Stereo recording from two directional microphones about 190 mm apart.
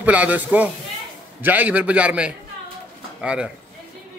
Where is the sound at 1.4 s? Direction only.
10° right (ahead or behind).